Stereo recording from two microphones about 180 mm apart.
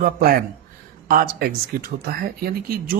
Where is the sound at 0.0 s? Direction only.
55° right (ahead or behind).